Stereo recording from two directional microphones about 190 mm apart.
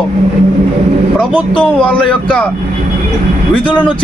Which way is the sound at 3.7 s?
25° left (ahead or behind).